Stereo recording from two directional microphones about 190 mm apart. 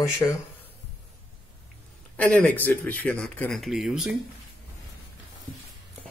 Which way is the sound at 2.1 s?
5° left (ahead or behind).